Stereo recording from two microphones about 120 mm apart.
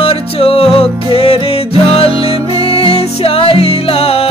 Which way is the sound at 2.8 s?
50° left (ahead or behind).